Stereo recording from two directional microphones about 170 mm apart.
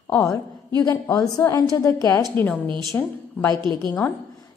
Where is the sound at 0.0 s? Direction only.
15° left (ahead or behind).